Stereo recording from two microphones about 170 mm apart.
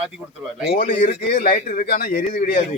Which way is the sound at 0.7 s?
50° left (ahead or behind).